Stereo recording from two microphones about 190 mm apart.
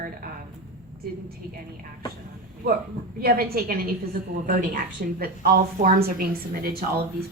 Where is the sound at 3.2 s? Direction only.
50° right (ahead or behind).